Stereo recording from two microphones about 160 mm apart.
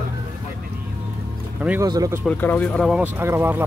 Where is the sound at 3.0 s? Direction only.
10° right (ahead or behind).